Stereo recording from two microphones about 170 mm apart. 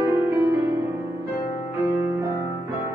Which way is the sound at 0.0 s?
15° right (ahead or behind).